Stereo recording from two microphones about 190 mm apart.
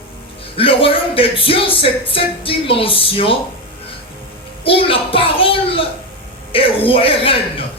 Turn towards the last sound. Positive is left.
turn(degrees=30)  # may be behind; listen again after turning